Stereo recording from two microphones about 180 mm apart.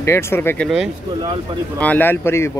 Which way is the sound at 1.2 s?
25° right (ahead or behind).